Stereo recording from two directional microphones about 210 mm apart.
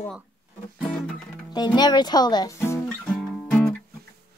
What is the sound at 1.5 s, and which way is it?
Speech, 20° left (ahead or behind).